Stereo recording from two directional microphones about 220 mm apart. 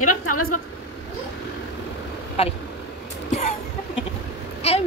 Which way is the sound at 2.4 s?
25° left (ahead or behind).